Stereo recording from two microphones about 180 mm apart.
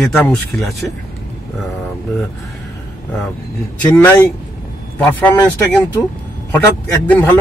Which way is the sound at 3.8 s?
10° left (ahead or behind).